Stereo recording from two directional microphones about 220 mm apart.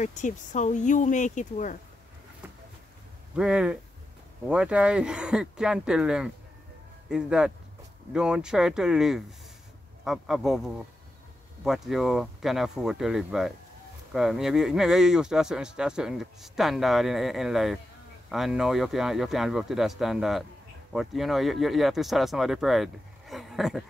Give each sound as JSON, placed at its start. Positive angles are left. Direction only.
{"t": 0.0, "sound": "speech", "side_deg": 35}
{"t": 3.3, "sound": "speech", "side_deg": -5}